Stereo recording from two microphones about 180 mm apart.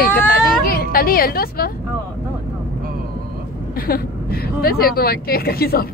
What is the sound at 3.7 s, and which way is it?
Speech, 55° left (ahead or behind).